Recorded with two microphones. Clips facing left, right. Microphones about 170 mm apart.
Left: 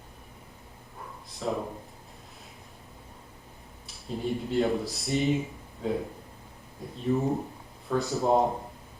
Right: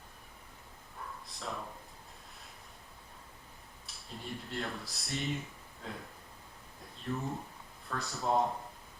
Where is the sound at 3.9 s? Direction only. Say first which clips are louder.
Left 13 dB; centre (ahead or behind).